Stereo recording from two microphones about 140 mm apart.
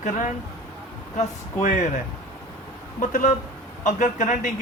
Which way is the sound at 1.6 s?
65° left (ahead or behind).